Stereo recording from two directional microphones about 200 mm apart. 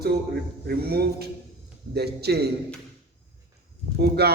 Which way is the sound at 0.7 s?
50° right (ahead or behind).